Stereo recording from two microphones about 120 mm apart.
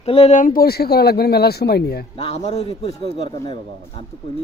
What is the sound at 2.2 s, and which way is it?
Speech, 55° left (ahead or behind).